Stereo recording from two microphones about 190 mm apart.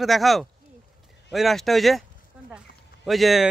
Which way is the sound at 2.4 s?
50° left (ahead or behind).